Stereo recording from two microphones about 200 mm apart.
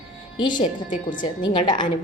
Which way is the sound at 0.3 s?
20° left (ahead or behind).